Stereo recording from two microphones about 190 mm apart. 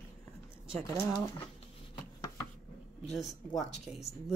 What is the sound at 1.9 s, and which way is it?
Chopping, 20° left (ahead or behind).